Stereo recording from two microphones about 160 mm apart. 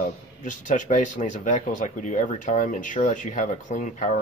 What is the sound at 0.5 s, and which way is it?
Speech, 50° left (ahead or behind).